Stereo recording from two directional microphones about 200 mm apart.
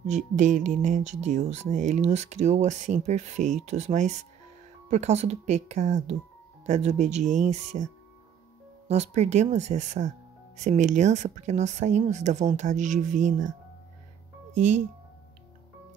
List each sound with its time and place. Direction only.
0.0 s speech: 35° right (ahead or behind)
8.8 s speech: 35° right (ahead or behind)
14.5 s speech: 35° right (ahead or behind)